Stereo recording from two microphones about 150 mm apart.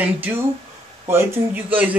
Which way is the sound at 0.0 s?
10° right (ahead or behind).